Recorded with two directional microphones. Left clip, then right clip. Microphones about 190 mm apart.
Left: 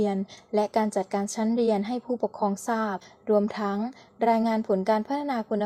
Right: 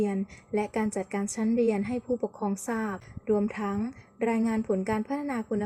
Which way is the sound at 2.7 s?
30° left (ahead or behind).